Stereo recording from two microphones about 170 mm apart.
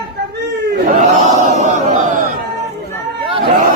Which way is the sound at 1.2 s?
45° right (ahead or behind).